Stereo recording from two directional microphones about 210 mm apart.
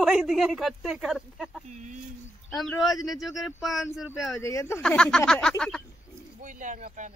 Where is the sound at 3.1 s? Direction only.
Centre (ahead or behind).